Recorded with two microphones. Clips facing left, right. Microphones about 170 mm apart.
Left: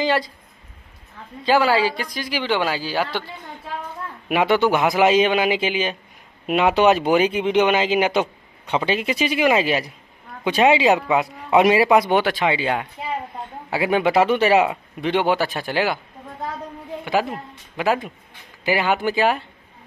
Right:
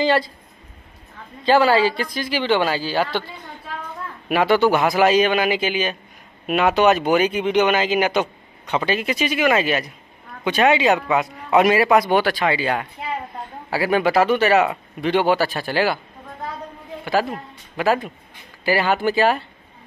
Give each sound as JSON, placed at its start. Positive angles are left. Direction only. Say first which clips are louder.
{"t": 0.0, "sound": "speech", "louder": "right 2 dB", "side_deg": 15}
{"t": 1.4, "sound": "speech", "louder": "right 2 dB", "side_deg": 10}
{"t": 4.3, "sound": "speech", "louder": "right 1 dB", "side_deg": 15}
{"t": 13.7, "sound": "speech", "louder": "even", "side_deg": 20}
{"t": 17.0, "sound": "speech", "louder": "right 1 dB", "side_deg": 15}